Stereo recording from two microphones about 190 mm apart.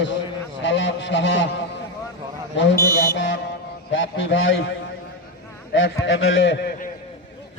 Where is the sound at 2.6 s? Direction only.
60° left (ahead or behind).